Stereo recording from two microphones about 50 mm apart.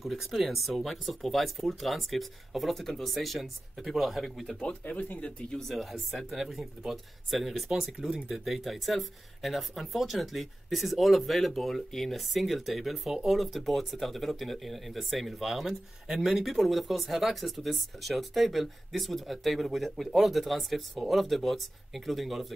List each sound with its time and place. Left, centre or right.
0.0 s speech: centre
4.5 s speech: centre
5.2 s speech: centre